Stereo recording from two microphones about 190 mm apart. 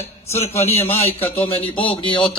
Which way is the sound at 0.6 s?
30° left (ahead or behind).